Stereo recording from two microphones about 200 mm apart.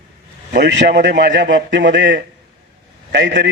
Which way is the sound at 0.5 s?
65° right (ahead or behind).